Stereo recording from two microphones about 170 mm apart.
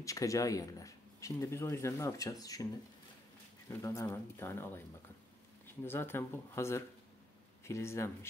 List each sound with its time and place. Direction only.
0.0 s speech: 20° left (ahead or behind)
3.8 s speech: 20° left (ahead or behind)
5.9 s speech: 15° left (ahead or behind)